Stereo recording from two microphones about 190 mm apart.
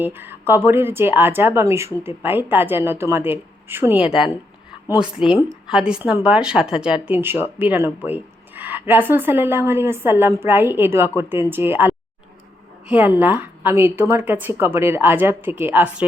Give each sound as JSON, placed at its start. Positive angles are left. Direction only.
{"t": 0.0, "sound": "speech", "side_deg": -10}